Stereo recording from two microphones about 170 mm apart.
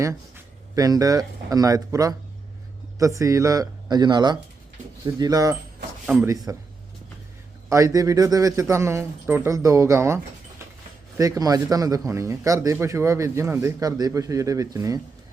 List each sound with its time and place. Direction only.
0.8 s a man's voice: 20° right (ahead or behind)
7.7 s a man's voice: 20° right (ahead or behind)
11.2 s a man's voice: 20° right (ahead or behind)